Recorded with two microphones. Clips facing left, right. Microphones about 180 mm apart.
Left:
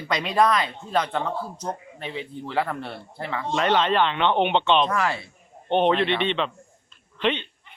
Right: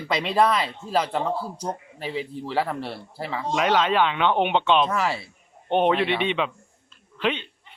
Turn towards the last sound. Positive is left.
turn(degrees=-5)  # may be behind; listen again after turning